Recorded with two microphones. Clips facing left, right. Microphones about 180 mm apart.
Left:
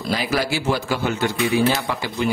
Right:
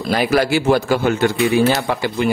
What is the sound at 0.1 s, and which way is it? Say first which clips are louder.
A man's voice: right 7 dB; 55° right (ahead or behind).